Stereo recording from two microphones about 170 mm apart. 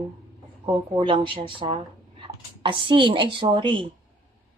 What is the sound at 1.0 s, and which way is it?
A woman's voice, 30° right (ahead or behind).